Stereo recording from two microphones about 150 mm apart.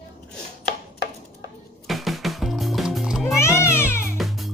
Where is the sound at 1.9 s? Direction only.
Centre (ahead or behind).